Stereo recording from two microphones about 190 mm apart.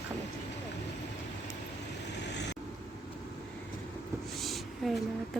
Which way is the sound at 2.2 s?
65° left (ahead or behind).